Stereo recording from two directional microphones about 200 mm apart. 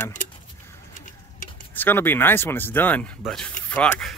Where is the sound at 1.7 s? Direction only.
10° left (ahead or behind).